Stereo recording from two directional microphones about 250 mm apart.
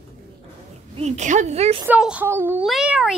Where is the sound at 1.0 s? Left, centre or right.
Right.